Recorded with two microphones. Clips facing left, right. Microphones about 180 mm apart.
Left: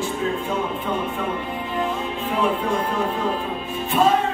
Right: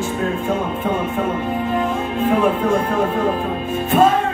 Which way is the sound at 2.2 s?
50° right (ahead or behind).